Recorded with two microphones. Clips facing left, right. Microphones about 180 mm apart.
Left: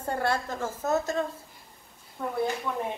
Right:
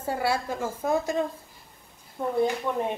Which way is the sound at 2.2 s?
25° right (ahead or behind).